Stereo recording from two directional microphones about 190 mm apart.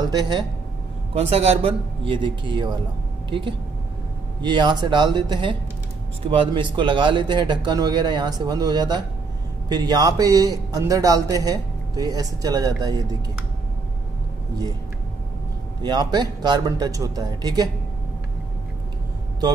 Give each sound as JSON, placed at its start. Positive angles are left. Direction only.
{"t": 0.1, "sound": "a man's voice", "side_deg": -20}
{"t": 1.3, "sound": "a man's voice", "side_deg": -35}
{"t": 15.8, "sound": "a man's voice", "side_deg": -20}